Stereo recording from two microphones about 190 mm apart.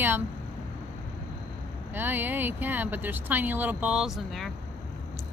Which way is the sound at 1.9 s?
10° right (ahead or behind).